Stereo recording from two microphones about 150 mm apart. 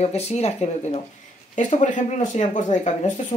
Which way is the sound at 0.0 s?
45° left (ahead or behind).